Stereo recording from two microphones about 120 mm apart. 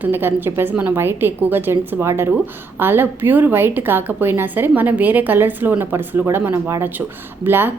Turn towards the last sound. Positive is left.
turn(degrees=-20)  # may be behind; listen again after turning